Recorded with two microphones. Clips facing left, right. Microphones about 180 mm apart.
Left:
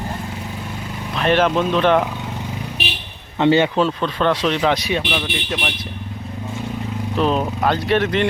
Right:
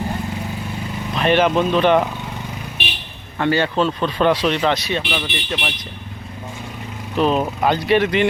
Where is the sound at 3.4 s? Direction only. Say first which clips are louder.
Left 4 dB; 20° left (ahead or behind).